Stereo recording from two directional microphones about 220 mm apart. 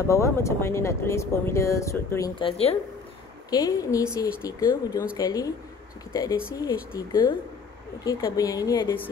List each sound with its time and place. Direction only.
0.0 s speech: 15° left (ahead or behind)
6.5 s speech: 15° left (ahead or behind)